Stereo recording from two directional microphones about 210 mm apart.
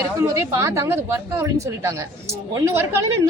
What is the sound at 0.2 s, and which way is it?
A woman's voice, 15° right (ahead or behind).